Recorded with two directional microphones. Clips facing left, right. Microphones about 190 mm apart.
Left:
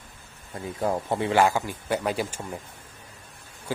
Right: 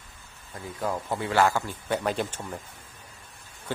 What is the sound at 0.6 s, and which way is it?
Speech, 25° left (ahead or behind).